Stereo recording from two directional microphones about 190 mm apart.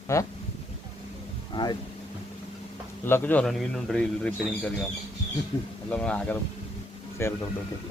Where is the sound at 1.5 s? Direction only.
25° left (ahead or behind).